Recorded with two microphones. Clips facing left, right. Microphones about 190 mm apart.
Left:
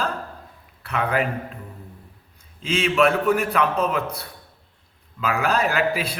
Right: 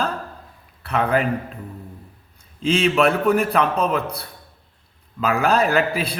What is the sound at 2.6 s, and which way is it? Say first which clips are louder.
A man's voice: right 2 dB; 35° right (ahead or behind).